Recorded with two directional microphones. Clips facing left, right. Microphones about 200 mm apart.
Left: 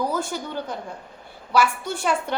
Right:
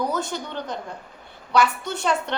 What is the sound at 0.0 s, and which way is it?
A woman's voice, 10° left (ahead or behind).